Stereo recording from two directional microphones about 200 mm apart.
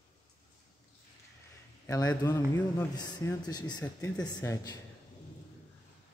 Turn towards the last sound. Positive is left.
turn(degrees=15)  # may be behind; listen again after turning